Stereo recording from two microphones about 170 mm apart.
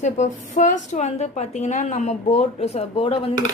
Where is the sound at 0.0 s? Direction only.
45° left (ahead or behind).